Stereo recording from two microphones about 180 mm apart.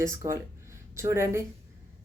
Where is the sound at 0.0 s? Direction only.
15° right (ahead or behind).